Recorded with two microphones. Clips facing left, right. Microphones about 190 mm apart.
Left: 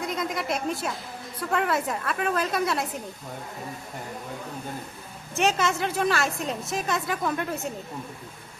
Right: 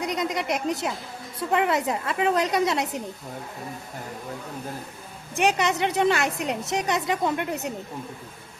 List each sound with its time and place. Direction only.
0.0 s a woman's voice: 20° right (ahead or behind)
5.3 s a woman's voice: 10° right (ahead or behind)